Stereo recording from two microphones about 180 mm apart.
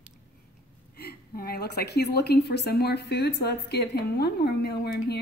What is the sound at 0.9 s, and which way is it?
A woman's voice, 60° left (ahead or behind).